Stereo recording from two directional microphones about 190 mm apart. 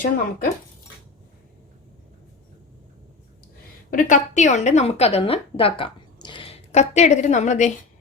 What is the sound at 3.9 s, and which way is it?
A woman's voice, 45° left (ahead or behind).